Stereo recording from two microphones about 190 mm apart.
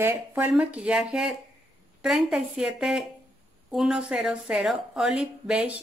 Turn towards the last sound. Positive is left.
turn(degrees=-5)  # may be behind; listen again after turning